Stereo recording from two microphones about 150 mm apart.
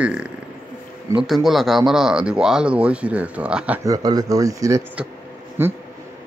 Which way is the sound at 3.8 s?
25° right (ahead or behind).